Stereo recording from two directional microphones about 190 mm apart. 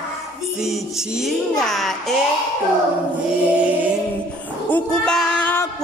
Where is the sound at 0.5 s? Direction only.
Centre (ahead or behind).